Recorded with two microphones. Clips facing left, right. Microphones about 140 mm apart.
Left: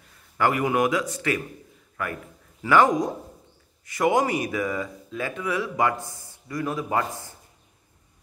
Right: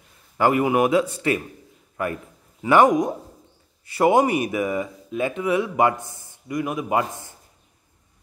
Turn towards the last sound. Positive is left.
turn(degrees=-15)  # may be behind; listen again after turning